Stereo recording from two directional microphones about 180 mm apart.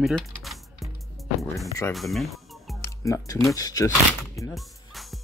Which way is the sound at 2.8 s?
15° left (ahead or behind).